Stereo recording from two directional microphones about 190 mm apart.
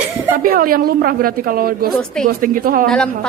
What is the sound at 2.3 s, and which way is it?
Speech, 50° right (ahead or behind).